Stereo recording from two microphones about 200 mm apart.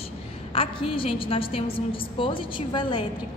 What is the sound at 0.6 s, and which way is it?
A woman's voice, 25° left (ahead or behind).